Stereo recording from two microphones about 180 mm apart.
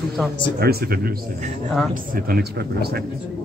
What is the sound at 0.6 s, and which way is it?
Speech, 60° right (ahead or behind).